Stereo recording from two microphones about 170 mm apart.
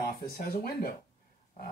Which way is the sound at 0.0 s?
60° left (ahead or behind).